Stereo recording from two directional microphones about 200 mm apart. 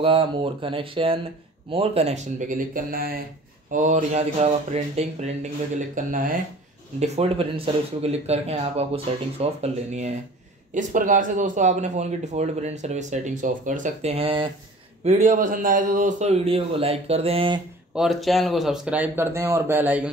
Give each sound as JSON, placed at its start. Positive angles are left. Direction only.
{"t": 0.0, "sound": "speech", "side_deg": -25}
{"t": 7.0, "sound": "speech", "side_deg": -30}
{"t": 15.0, "sound": "speech", "side_deg": -35}
{"t": 17.9, "sound": "speech", "side_deg": 0}